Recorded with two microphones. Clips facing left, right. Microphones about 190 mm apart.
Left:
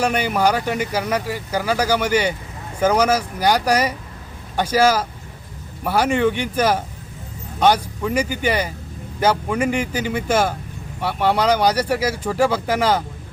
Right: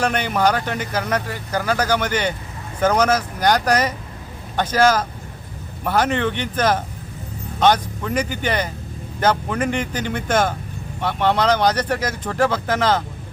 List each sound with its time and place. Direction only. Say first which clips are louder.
0.0 s speech: left 1 dB; 10° left (ahead or behind)